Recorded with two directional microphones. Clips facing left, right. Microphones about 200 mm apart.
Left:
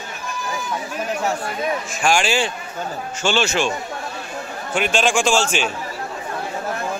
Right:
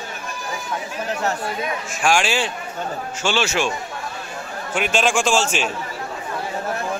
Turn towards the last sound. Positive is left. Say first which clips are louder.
# left 1 dB
turn(degrees=-5)  # may be behind; listen again after turning